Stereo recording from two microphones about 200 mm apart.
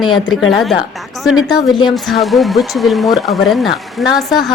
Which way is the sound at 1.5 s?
20° left (ahead or behind).